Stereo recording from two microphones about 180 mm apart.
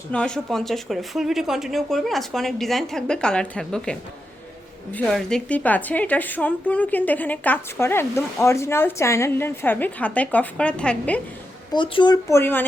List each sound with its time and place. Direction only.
0.1 s speech: 5° left (ahead or behind)
4.9 s a woman's voice: 5° left (ahead or behind)
11.7 s speech: 25° left (ahead or behind)